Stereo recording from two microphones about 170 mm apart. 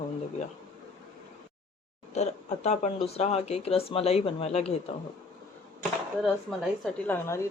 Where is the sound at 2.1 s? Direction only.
40° left (ahead or behind).